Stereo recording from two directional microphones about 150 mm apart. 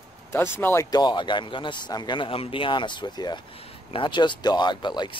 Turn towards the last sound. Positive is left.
turn(degrees=30)  # may be behind; listen again after turning